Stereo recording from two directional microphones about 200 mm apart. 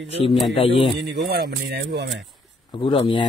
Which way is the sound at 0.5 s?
25° left (ahead or behind).